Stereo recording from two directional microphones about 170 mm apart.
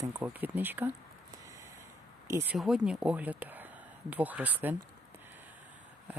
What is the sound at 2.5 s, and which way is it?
Speech, 5° right (ahead or behind).